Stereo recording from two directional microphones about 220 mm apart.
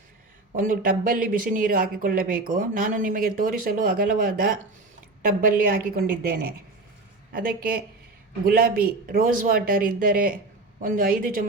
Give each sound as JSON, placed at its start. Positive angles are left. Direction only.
{"t": 0.5, "sound": "speech", "side_deg": -40}
{"t": 5.7, "sound": "speech", "side_deg": -40}